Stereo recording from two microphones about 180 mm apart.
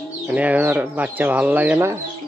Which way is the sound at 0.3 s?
10° right (ahead or behind).